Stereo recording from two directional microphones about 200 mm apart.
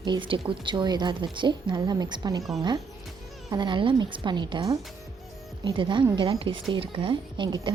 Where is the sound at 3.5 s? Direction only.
20° right (ahead or behind).